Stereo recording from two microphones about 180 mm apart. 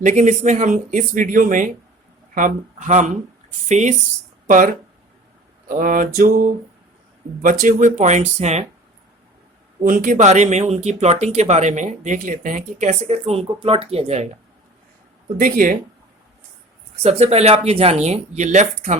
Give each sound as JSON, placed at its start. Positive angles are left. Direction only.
{"t": 0.0, "sound": "speech", "side_deg": -40}
{"t": 9.8, "sound": "speech", "side_deg": -50}
{"t": 15.4, "sound": "speech", "side_deg": -50}
{"t": 17.0, "sound": "speech", "side_deg": -35}